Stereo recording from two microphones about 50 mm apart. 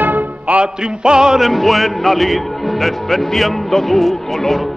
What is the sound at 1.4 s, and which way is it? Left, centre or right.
Speech, centre.